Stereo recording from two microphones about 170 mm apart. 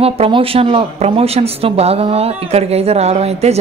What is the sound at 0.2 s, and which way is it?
Speech, 35° right (ahead or behind).